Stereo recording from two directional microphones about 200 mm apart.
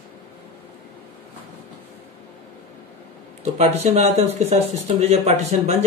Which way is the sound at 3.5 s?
30° right (ahead or behind).